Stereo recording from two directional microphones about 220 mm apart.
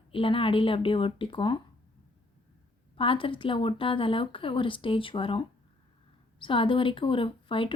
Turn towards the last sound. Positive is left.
turn(degrees=25)  # may be behind; listen again after turning